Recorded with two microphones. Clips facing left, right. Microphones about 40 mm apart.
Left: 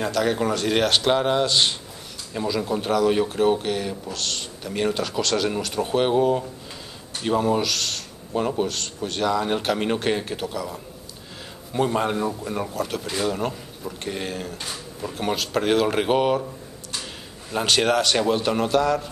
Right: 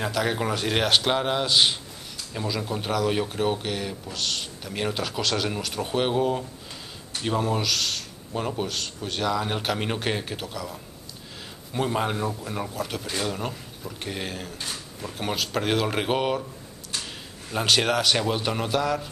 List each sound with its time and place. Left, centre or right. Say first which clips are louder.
0.0 s a man's voice: left 3 dB; centre